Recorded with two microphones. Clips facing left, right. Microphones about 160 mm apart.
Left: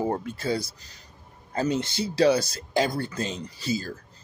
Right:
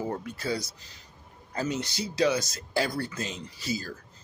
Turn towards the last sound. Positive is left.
turn(degrees=30)  # may be behind; listen again after turning